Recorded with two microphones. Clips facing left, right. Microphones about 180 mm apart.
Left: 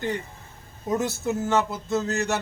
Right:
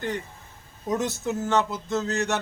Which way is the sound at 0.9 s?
5° left (ahead or behind).